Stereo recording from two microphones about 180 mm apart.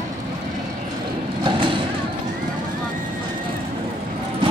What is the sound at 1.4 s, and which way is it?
Vehicle, 25° right (ahead or behind).